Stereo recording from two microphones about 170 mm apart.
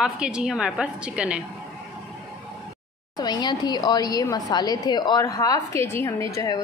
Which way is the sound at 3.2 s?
25° left (ahead or behind).